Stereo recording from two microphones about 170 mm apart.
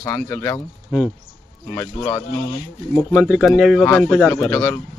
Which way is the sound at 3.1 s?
Centre (ahead or behind).